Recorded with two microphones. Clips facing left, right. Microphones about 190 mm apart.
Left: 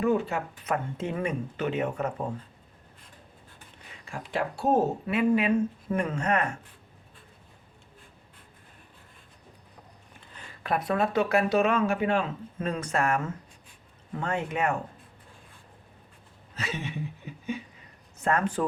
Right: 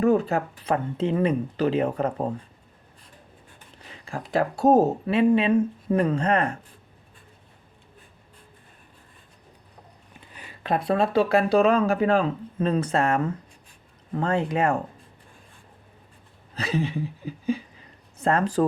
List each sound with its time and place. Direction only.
0.0 s speech: 40° right (ahead or behind)
3.8 s speech: 35° right (ahead or behind)
10.6 s speech: 25° right (ahead or behind)
16.6 s speech: 35° right (ahead or behind)